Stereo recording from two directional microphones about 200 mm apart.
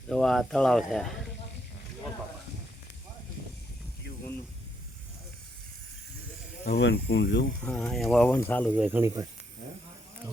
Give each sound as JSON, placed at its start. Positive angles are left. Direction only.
{"t": 0.1, "sound": "speech", "side_deg": 5}
{"t": 6.7, "sound": "speech", "side_deg": 55}
{"t": 7.6, "sound": "speech", "side_deg": 5}
{"t": 8.8, "sound": "speech", "side_deg": -10}